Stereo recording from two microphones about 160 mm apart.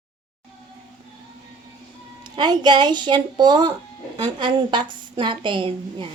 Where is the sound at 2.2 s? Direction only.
25° right (ahead or behind).